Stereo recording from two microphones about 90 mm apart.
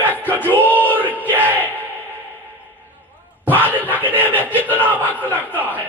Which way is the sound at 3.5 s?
20° left (ahead or behind).